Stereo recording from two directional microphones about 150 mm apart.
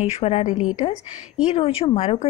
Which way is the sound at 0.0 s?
45° left (ahead or behind).